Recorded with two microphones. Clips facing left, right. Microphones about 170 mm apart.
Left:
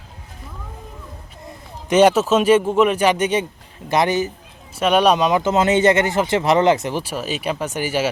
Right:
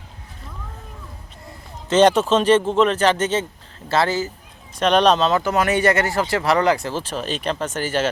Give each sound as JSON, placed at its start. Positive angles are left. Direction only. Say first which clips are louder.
{"t": 1.9, "sound": "speech", "louder": "left 1 dB", "side_deg": 10}